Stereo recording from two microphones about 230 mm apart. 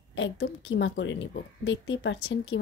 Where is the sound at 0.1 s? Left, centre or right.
Left.